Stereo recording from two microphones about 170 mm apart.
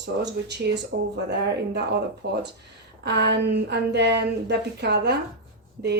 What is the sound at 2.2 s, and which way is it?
Speech, 85° right.